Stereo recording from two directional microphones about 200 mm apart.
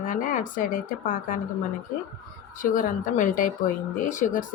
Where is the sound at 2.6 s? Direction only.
40° left (ahead or behind).